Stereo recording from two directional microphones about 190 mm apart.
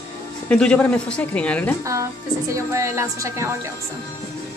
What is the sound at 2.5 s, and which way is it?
A woman's voice, 15° right (ahead or behind).